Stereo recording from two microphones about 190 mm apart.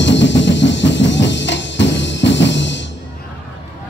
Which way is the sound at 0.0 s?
70° left (ahead or behind).